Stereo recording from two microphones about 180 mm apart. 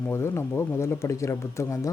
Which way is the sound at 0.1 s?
15° left (ahead or behind).